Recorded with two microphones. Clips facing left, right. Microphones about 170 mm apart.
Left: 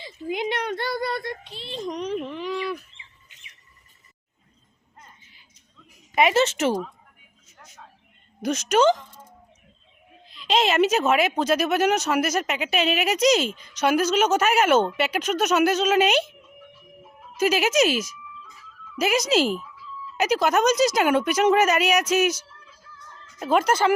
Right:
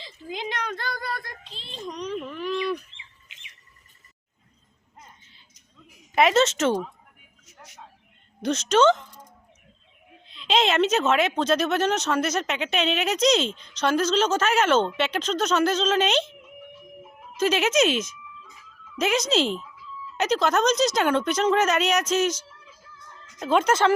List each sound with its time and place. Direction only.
0.3 s a sound: 25° left (ahead or behind)
1.5 s a child's voice: 10° left (ahead or behind)
2.0 s a sound: 20° left (ahead or behind)
6.1 s a woman's voice: 5° left (ahead or behind)
7.4 s vehicle: 80° right
8.4 s speech: 10° left (ahead or behind)
17.3 s speech: 10° left (ahead or behind)